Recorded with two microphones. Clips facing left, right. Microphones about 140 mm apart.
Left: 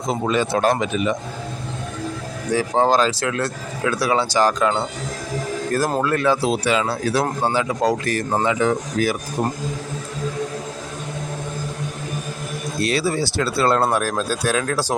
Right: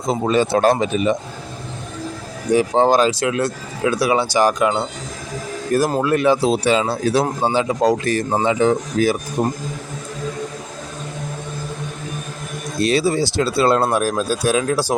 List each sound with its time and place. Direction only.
0.1 s speech: 30° right (ahead or behind)
2.5 s speech: 20° right (ahead or behind)
6.0 s speech: 15° right (ahead or behind)
6.5 s speech: 30° right (ahead or behind)
12.8 s speech: 20° right (ahead or behind)